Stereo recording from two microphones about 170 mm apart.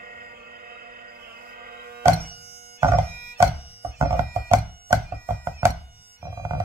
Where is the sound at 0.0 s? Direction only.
65° right (ahead or behind).